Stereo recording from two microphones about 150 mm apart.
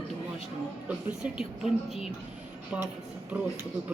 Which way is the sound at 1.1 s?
5° right (ahead or behind).